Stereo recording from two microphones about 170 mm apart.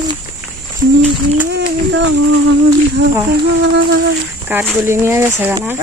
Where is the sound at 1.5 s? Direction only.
90° right.